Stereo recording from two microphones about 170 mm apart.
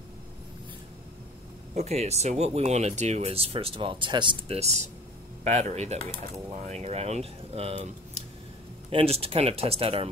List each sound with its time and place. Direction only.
1.8 s speech: 40° right (ahead or behind)